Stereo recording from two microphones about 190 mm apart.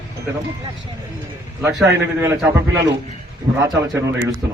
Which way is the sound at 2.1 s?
15° right (ahead or behind).